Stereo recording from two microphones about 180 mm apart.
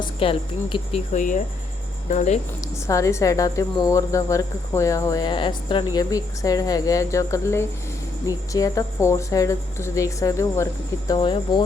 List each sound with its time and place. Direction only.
0.0 s speech: 30° left (ahead or behind)
2.8 s speech: 15° left (ahead or behind)